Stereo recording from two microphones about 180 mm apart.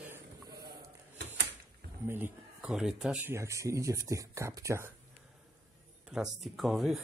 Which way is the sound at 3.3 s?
15° right (ahead or behind).